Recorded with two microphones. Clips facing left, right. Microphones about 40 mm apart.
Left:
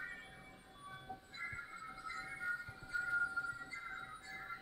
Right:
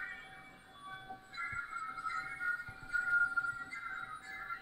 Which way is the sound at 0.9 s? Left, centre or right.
Right.